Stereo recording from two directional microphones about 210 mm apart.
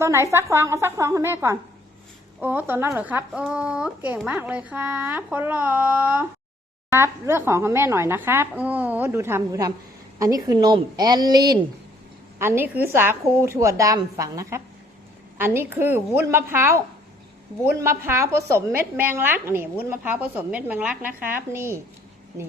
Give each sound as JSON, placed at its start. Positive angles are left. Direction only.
{"t": 0.0, "sound": "a woman's voice", "side_deg": -15}